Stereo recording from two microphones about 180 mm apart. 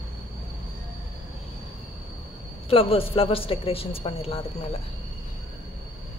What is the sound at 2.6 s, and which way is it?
A man's voice, 30° left (ahead or behind).